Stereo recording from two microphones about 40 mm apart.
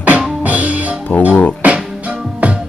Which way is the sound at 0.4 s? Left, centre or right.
Right.